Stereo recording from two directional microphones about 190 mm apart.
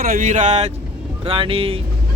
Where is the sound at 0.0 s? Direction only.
45° right (ahead or behind); by 1.8 s 30° right (ahead or behind).